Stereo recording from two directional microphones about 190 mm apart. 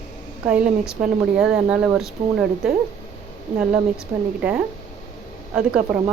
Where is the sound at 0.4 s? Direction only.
5° right (ahead or behind).